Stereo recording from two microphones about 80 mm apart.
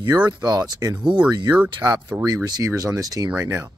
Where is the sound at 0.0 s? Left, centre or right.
Right.